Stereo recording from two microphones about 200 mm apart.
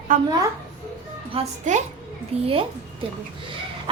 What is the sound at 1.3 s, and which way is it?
A woman's voice, 35° right (ahead or behind).